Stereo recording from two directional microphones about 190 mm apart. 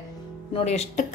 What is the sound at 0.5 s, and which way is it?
Speech, 35° left (ahead or behind).